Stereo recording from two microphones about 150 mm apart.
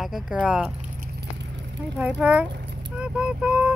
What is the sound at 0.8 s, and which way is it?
Keys jangling, 70° right (ahead or behind).